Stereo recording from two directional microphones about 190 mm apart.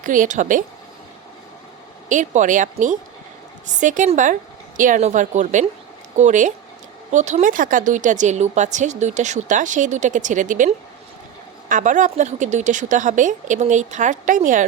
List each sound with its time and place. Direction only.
0.0 s speech: 45° right (ahead or behind)
2.0 s speech: 40° right (ahead or behind)